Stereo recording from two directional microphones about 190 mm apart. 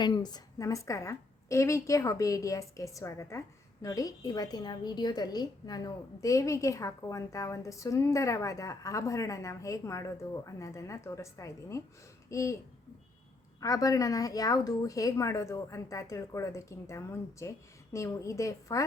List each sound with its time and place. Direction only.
0.0 s a woman's voice: 20° left (ahead or behind)
13.6 s a woman's voice: 20° left (ahead or behind)